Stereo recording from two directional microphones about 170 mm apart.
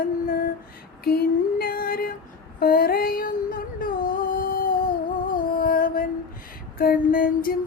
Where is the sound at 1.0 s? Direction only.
65° left (ahead or behind).